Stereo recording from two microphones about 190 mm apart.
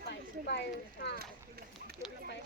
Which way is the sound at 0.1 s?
65° left (ahead or behind).